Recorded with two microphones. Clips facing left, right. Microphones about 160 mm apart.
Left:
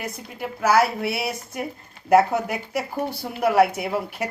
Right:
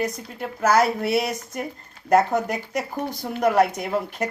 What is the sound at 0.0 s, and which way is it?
A woman's voice, 5° left (ahead or behind).